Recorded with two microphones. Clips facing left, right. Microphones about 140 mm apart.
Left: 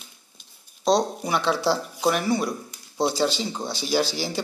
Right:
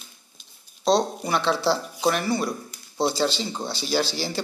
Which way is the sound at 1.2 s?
5° left (ahead or behind).